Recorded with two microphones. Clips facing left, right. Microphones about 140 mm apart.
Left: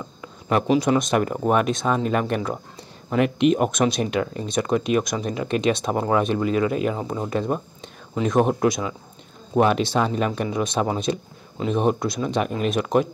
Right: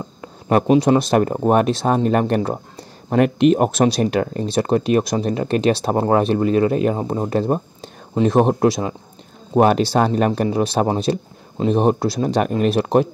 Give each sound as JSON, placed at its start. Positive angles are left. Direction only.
{"t": 0.2, "sound": "a sound", "side_deg": -45}
{"t": 0.8, "sound": "speech", "side_deg": -30}
{"t": 4.5, "sound": "speech", "side_deg": -35}
{"t": 12.6, "sound": "speech", "side_deg": -35}